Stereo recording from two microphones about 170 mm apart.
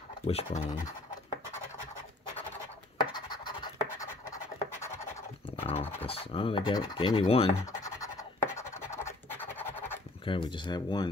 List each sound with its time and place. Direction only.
0.3 s speech: 35° left (ahead or behind)
3.0 s scratch: 25° left (ahead or behind)
5.6 s scratch: 35° left (ahead or behind)
6.0 s speech: 35° left (ahead or behind)
7.8 s scratch: 20° left (ahead or behind)
10.2 s speech: 30° left (ahead or behind)